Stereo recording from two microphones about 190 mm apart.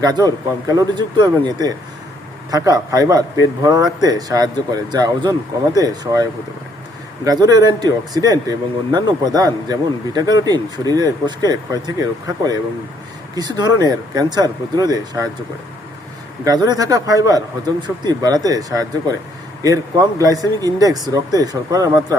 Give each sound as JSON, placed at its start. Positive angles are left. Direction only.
{"t": 0.0, "sound": "speech", "side_deg": -20}
{"t": 7.3, "sound": "speech", "side_deg": -20}
{"t": 16.4, "sound": "speech", "side_deg": -20}